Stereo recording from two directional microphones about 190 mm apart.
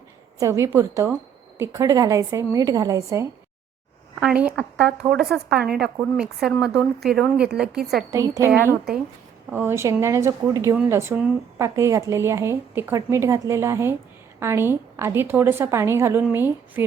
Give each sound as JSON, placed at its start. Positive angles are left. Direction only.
{"t": 0.3, "sound": "speech", "side_deg": -15}
{"t": 4.2, "sound": "a woman's voice", "side_deg": -5}
{"t": 8.1, "sound": "speech", "side_deg": -15}